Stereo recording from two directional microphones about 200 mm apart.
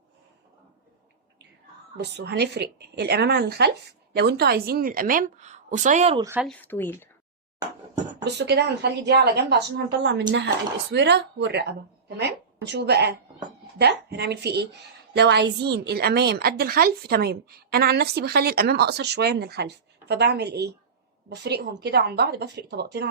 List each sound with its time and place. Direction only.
2.0 s a woman's voice: 55° right (ahead or behind); by 6.1 s 35° right (ahead or behind)
6.1 s speech: 15° right (ahead or behind)
6.4 s speech: 5° left (ahead or behind)
8.2 s a woman's voice: 55° right (ahead or behind)